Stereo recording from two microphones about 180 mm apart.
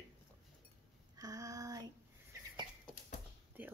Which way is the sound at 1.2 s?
20° right (ahead or behind).